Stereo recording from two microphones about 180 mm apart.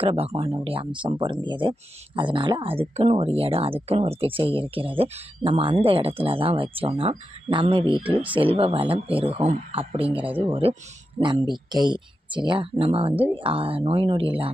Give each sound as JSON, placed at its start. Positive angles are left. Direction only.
{"t": 0.0, "sound": "speech", "side_deg": -30}